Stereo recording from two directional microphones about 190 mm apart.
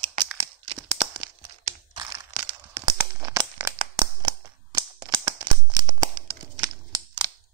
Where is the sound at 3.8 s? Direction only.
25° right (ahead or behind).